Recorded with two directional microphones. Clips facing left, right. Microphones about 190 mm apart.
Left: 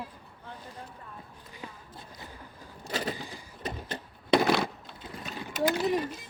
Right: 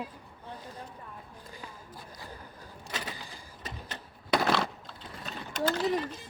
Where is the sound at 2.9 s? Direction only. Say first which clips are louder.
Left 7 dB; 35° left (ahead or behind).